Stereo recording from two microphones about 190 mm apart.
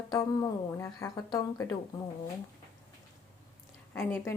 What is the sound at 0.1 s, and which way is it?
Speech, 20° left (ahead or behind).